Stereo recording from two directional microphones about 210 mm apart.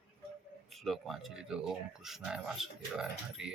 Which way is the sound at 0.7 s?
Centre (ahead or behind).